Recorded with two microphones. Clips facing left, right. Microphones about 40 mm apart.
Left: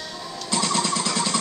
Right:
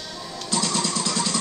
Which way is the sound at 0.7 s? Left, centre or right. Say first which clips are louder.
Left 2 dB; left.